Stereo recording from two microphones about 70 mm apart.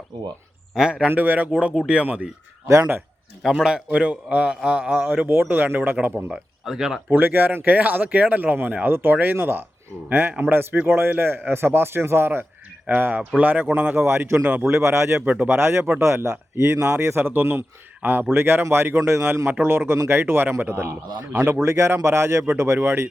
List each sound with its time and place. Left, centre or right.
0.1 s speech: right
0.7 s a man's voice: centre
1.0 s a man's voice: right
3.5 s a man's voice: centre
5.0 s speech: right
6.2 s speech: centre
7.1 s speech: right
14.0 s speech: right
15.2 s speech: right
15.4 s speech: right